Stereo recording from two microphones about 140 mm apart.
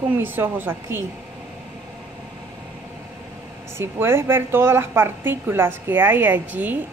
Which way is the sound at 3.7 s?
15° right (ahead or behind).